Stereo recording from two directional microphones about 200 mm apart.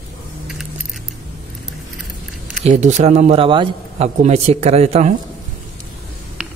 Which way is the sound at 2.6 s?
35° right (ahead or behind).